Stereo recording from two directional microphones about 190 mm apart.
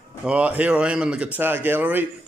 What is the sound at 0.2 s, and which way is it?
Speech, 5° right (ahead or behind).